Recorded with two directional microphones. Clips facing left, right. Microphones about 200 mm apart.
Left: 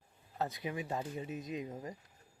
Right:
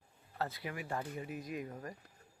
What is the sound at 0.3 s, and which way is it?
Speech, 20° left (ahead or behind).